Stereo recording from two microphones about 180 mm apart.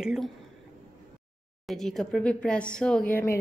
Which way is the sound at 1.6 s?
Centre (ahead or behind).